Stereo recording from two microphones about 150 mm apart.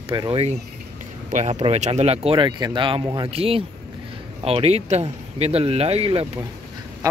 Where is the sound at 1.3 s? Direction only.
45° right (ahead or behind).